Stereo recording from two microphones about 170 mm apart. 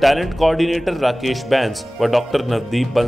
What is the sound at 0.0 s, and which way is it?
Speech, centre (ahead or behind).